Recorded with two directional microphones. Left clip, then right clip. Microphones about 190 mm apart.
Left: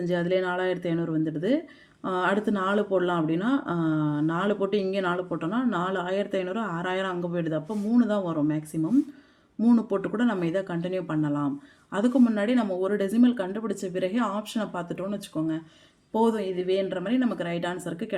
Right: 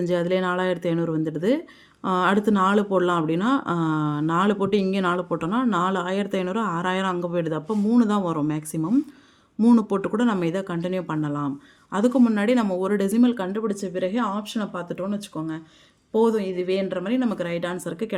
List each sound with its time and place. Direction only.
0.0 s speech: 35° right (ahead or behind)